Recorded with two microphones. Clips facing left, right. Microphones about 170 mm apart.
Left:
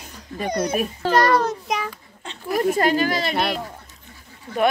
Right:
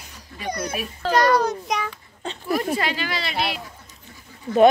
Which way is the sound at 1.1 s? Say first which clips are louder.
Even; 5° left (ahead or behind).